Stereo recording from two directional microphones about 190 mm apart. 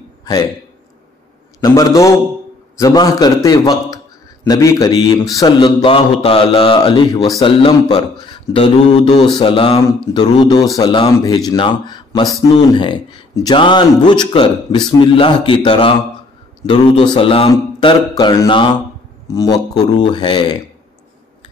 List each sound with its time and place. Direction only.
1.6 s a man's voice: 20° left (ahead or behind)